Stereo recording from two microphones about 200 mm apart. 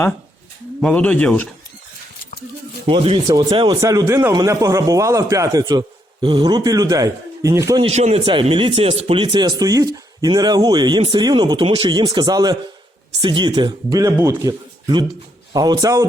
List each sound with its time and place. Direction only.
0.8 s speech: 5° left (ahead or behind)
2.8 s speech: 25° right (ahead or behind)
7.9 s speech: 30° right (ahead or behind)